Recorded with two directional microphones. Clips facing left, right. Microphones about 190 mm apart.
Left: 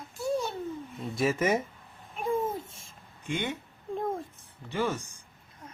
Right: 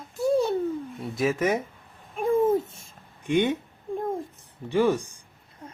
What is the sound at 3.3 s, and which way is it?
Speech, 15° right (ahead or behind).